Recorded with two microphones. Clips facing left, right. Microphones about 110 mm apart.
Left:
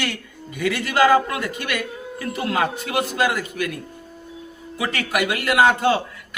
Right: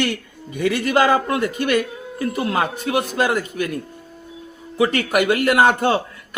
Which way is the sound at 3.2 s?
40° right (ahead or behind).